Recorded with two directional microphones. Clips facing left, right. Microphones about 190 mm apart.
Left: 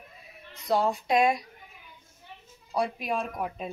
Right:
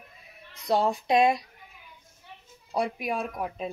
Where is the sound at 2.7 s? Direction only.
20° right (ahead or behind).